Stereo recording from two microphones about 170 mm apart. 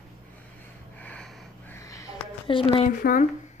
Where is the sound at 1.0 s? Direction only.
5° left (ahead or behind).